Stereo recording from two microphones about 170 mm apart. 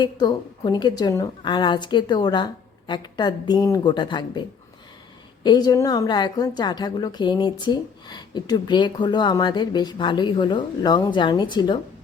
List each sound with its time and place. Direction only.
0.0 s a woman's voice: 25° left (ahead or behind)